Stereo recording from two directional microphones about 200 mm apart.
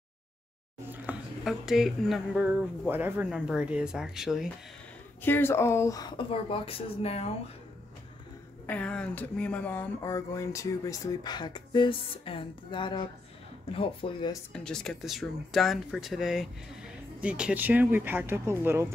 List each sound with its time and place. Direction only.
0.8 s speech: 10° right (ahead or behind)
5.2 s speech: 10° left (ahead or behind); by 7.3 s 30° left (ahead or behind)
8.6 s speech: 5° left (ahead or behind); by 14.4 s 25° left (ahead or behind)
14.5 s speech: 5° left (ahead or behind)